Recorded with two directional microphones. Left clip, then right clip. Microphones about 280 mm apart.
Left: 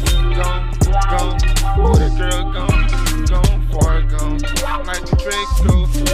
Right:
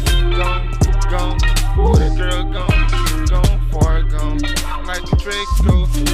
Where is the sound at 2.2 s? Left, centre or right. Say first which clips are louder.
Even; right.